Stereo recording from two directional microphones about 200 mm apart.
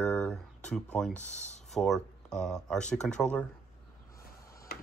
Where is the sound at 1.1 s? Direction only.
35° left (ahead or behind).